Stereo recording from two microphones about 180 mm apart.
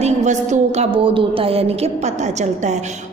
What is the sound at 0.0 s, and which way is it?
A woman's voice, 40° right (ahead or behind).